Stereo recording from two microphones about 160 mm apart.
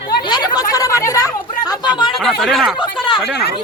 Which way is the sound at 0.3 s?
25° left (ahead or behind).